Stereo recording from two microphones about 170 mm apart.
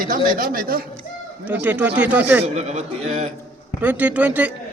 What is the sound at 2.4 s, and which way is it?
Speech, 40° right (ahead or behind).